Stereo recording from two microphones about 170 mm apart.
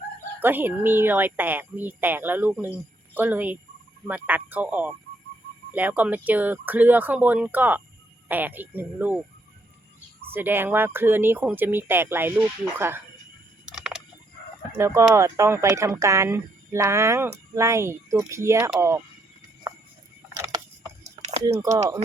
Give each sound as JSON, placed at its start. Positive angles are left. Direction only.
{"t": 0.3, "sound": "speech", "side_deg": -10}
{"t": 10.3, "sound": "speech", "side_deg": -10}
{"t": 13.7, "sound": "a sound", "side_deg": -5}
{"t": 14.8, "sound": "speech", "side_deg": -15}
{"t": 21.2, "sound": "a sound", "side_deg": -40}
{"t": 21.4, "sound": "speech", "side_deg": -20}